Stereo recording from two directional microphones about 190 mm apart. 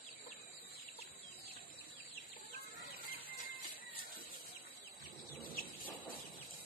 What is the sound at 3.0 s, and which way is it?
Music, 50° left (ahead or behind).